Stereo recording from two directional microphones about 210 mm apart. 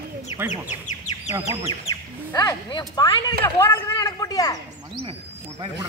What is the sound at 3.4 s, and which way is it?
Speech, 10° left (ahead or behind).